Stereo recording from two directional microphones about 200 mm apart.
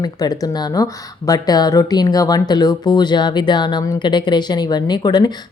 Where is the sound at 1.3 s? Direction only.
20° left (ahead or behind).